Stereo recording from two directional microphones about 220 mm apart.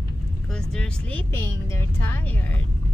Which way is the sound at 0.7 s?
5° left (ahead or behind).